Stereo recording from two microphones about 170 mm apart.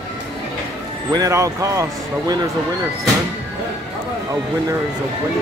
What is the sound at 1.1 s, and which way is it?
Speech, 20° right (ahead or behind).